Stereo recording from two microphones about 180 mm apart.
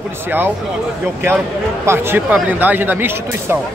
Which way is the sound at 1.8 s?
15° right (ahead or behind).